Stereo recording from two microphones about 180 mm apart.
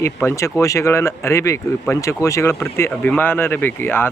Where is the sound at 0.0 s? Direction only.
15° left (ahead or behind).